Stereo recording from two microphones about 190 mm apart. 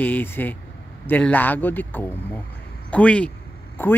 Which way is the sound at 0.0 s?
10° left (ahead or behind).